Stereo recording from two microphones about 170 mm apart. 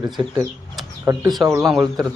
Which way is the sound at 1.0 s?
15° right (ahead or behind).